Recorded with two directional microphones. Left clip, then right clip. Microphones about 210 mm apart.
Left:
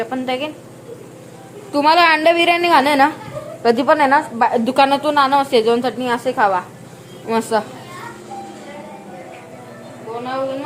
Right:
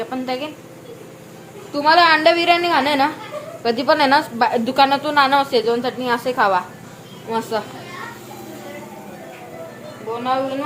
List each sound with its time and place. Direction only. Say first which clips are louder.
0.0 s a woman's voice: left 3 dB; 15° left (ahead or behind)
1.7 s a woman's voice: left 1 dB; 30° left (ahead or behind)
5.2 s a woman's voice: even; centre (ahead or behind)
5.5 s a woman's voice: left 3 dB; 20° left (ahead or behind)
6.0 s a woman's voice: left 1 dB; 10° left (ahead or behind)
7.3 s a woman's voice: left 4 dB; 25° left (ahead or behind)